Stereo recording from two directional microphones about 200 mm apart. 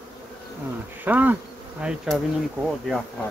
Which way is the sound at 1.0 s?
10° right (ahead or behind).